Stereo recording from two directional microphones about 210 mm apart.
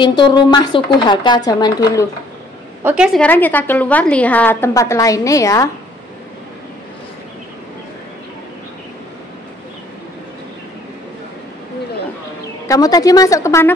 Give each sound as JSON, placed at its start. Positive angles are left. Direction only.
{"t": 0.0, "sound": "speech", "side_deg": 20}
{"t": 2.8, "sound": "a woman's voice", "side_deg": -5}
{"t": 12.6, "sound": "a woman's voice", "side_deg": 15}